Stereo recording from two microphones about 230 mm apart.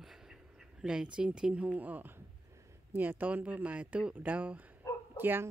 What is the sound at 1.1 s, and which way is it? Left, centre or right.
A woman's voice, centre.